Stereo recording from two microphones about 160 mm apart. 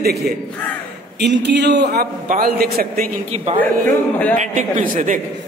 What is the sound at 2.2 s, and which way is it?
Speech, 65° right (ahead or behind).